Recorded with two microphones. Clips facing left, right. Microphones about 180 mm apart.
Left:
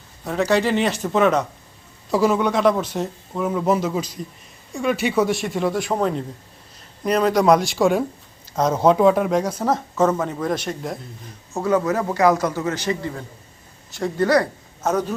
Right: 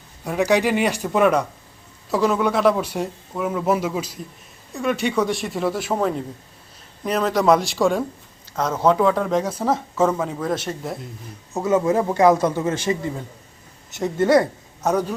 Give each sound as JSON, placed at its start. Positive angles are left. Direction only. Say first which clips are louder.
{"t": 0.3, "sound": "speech", "louder": "even", "side_deg": -15}
{"t": 8.8, "sound": "speech", "louder": "left 2 dB", "side_deg": 15}
{"t": 9.3, "sound": "speech", "louder": "even", "side_deg": -5}
{"t": 11.6, "sound": "a man's voice", "louder": "right 1 dB", "side_deg": -25}